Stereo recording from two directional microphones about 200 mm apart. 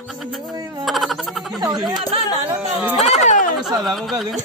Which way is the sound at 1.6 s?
20° right (ahead or behind).